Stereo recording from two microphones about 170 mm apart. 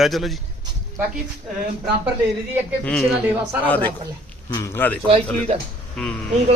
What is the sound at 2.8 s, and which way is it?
A man's voice, 5° left (ahead or behind).